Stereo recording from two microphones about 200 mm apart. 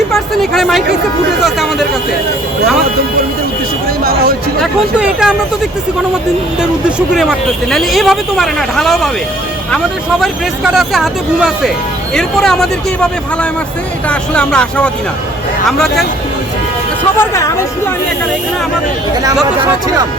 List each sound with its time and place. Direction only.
0.1 s speech: centre (ahead or behind)
4.0 s a sound: 50° right (ahead or behind)
4.6 s speech: 5° right (ahead or behind)
7.1 s speech: centre (ahead or behind)
14.1 s speech: 5° left (ahead or behind)
17.2 s speech: 15° left (ahead or behind)